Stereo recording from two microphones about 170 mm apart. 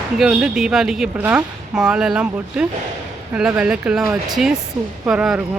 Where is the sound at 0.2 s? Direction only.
5° right (ahead or behind).